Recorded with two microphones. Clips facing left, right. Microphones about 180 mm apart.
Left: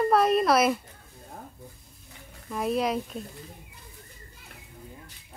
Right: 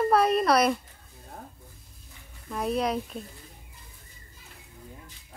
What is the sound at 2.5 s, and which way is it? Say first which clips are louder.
Speech: left 1 dB; centre (ahead or behind).